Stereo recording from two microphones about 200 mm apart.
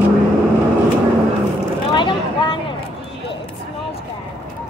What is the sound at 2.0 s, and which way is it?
Speech, 25° left (ahead or behind).